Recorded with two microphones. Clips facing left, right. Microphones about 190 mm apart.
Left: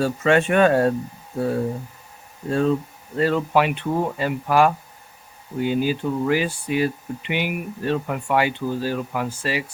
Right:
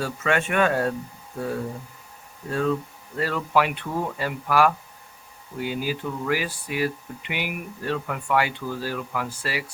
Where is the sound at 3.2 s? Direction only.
25° left (ahead or behind).